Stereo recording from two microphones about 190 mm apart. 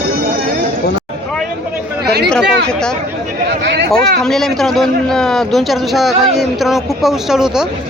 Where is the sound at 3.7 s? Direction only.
65° right (ahead or behind).